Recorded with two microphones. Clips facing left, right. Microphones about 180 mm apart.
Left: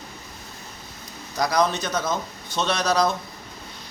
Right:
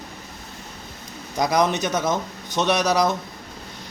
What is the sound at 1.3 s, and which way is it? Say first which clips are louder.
Speech: right 2 dB; 20° right (ahead or behind).